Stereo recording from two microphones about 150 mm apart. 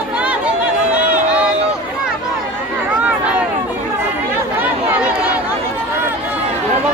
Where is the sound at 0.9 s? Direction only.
10° right (ahead or behind).